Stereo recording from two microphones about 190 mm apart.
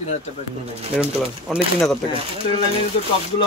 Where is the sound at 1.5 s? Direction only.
Centre (ahead or behind).